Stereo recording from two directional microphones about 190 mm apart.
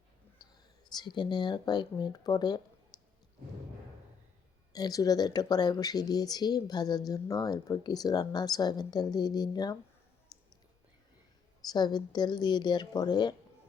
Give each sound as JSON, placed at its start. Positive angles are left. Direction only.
{"t": 0.4, "sound": "whispering", "side_deg": 20}
{"t": 0.9, "sound": "speech", "side_deg": 25}
{"t": 2.9, "sound": "a sound", "side_deg": 20}
{"t": 4.7, "sound": "speech", "side_deg": 20}
{"t": 10.3, "sound": "a sound", "side_deg": 20}
{"t": 11.6, "sound": "speech", "side_deg": 20}